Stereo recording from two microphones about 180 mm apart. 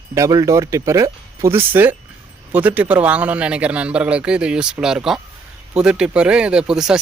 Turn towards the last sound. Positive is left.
turn(degrees=-5)  # may be behind; listen again after turning